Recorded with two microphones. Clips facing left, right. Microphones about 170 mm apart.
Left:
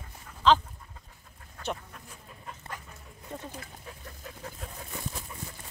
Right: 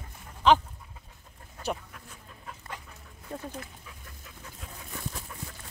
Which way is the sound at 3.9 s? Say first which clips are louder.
Left 6 dB; 45° left (ahead or behind).